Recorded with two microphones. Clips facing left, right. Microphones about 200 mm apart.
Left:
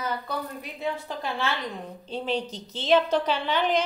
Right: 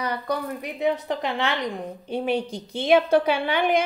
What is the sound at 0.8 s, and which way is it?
A woman's voice, 20° right (ahead or behind).